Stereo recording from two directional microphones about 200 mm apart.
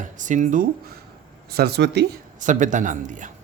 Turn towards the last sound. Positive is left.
turn(degrees=-40)  # may be behind; listen again after turning